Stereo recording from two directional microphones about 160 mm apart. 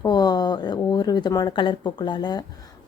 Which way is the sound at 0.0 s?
25° left (ahead or behind).